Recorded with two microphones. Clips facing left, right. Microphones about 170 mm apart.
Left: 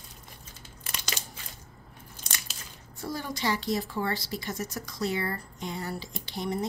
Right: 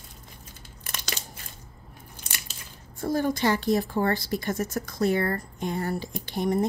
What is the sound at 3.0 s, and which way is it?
A woman's voice, 50° right (ahead or behind).